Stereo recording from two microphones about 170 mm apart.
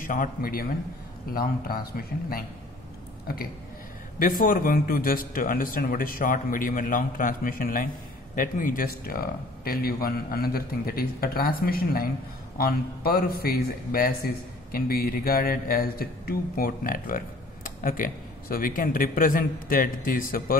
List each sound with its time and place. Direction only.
0.0 s a man's voice: 50° left (ahead or behind)